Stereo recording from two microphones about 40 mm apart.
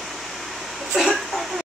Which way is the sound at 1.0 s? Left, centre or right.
Centre.